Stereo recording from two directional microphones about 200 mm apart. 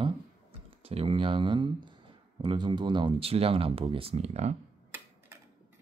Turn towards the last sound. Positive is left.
turn(degrees=-35)  # may be behind; listen again after turning